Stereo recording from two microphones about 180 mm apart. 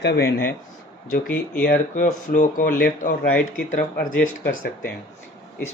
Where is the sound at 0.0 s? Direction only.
65° left (ahead or behind).